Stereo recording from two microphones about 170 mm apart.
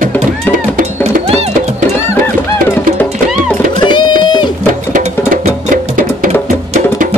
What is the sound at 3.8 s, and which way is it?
Music, 25° left (ahead or behind).